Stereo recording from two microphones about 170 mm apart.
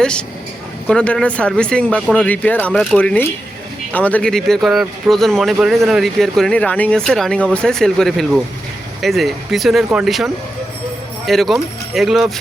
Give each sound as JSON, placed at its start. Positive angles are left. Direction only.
{"t": 0.0, "sound": "speech", "side_deg": 5}
{"t": 11.3, "sound": "speech", "side_deg": 0}